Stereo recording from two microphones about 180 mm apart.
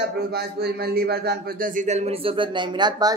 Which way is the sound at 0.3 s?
60° right (ahead or behind).